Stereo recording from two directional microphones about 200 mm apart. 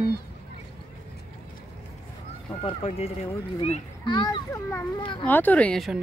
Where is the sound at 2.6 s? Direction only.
30° left (ahead or behind).